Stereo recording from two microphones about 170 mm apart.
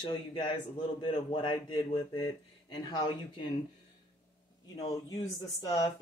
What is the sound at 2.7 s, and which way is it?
Speech, 25° left (ahead or behind).